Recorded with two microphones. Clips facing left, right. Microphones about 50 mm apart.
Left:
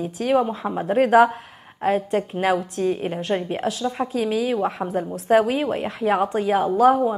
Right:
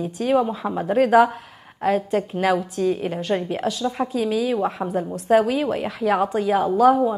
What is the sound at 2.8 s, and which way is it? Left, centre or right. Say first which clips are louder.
Speech: right 1 dB; left.